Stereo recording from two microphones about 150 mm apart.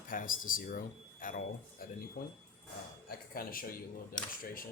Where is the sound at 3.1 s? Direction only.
80° left.